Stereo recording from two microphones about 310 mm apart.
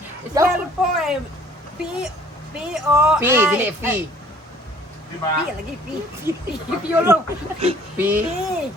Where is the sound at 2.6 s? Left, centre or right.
Centre.